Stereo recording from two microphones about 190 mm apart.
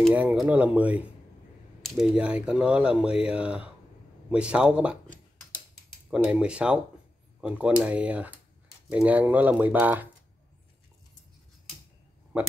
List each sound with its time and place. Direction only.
0.0 s speech: 5° right (ahead or behind)
6.0 s speech: 5° right (ahead or behind)
12.3 s speech: 10° right (ahead or behind)